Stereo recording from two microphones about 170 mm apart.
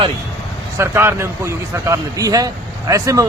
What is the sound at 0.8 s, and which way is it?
Speech, 15° right (ahead or behind).